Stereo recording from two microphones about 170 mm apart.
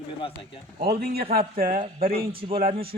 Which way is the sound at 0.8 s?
65° right (ahead or behind).